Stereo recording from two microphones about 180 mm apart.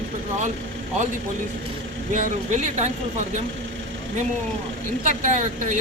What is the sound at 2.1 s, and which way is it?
Speech, 45° right (ahead or behind).